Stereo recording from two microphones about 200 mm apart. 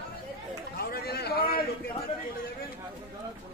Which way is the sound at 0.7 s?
50° left (ahead or behind).